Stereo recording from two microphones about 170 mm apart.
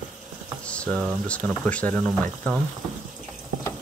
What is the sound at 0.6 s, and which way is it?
Speech, 5° left (ahead or behind).